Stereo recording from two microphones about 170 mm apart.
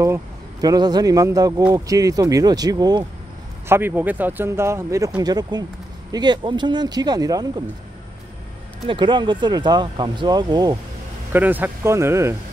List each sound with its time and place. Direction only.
0.0 s speech: 20° right (ahead or behind)
8.8 s speech: 30° right (ahead or behind)
11.3 s speech: 10° right (ahead or behind)